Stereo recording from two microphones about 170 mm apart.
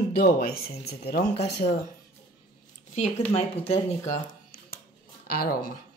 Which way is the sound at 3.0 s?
35° left (ahead or behind).